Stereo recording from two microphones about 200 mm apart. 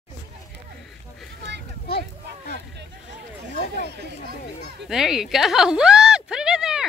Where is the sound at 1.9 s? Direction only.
50° left (ahead or behind).